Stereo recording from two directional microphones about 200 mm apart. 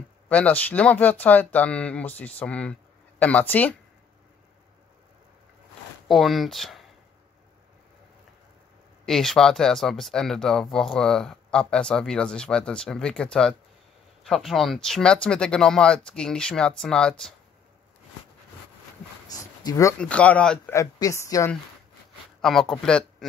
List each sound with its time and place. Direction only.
0.3 s speech: 5° left (ahead or behind)
6.0 s speech: centre (ahead or behind)
9.0 s speech: centre (ahead or behind)
19.6 s speech: 15° left (ahead or behind)
20.0 s speech: 5° left (ahead or behind)
22.4 s speech: centre (ahead or behind)